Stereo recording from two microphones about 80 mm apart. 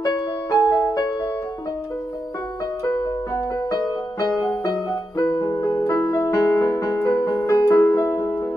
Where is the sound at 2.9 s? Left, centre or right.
Left.